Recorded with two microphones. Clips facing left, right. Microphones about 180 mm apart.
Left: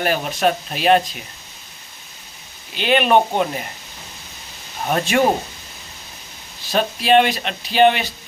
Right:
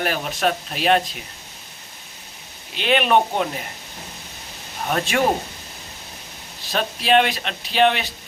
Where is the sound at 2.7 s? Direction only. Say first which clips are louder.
Left 2 dB; centre (ahead or behind).